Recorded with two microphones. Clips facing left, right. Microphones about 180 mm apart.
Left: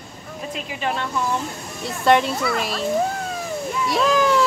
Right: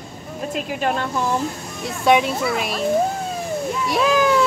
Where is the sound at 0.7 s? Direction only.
45° right (ahead or behind).